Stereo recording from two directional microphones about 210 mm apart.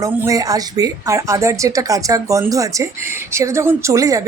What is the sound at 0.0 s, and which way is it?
A woman's voice, 15° right (ahead or behind).